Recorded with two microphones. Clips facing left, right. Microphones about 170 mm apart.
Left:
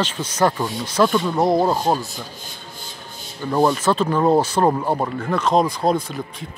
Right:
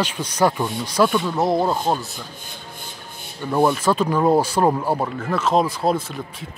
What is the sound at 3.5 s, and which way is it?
Speech, 10° right (ahead or behind).